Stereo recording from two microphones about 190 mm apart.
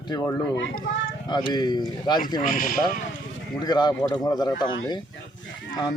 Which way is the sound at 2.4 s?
45° left (ahead or behind).